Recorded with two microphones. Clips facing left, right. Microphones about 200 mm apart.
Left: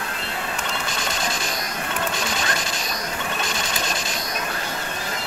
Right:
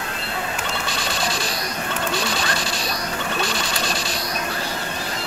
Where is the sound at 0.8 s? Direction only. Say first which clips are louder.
Right 2 dB; 35° right (ahead or behind).